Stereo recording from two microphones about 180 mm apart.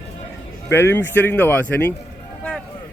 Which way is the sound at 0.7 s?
15° left (ahead or behind).